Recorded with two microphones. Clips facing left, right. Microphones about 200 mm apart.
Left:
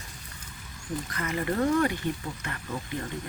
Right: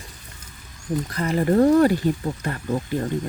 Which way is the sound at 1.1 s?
35° right (ahead or behind).